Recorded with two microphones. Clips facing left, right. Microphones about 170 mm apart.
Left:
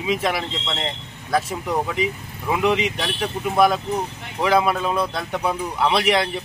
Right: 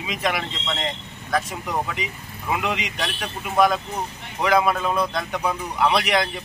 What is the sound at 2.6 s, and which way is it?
Speech, 30° left (ahead or behind).